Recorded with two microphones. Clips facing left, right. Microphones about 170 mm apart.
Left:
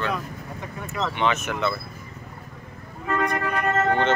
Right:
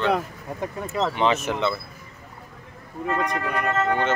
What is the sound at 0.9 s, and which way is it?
Speech, 30° right (ahead or behind).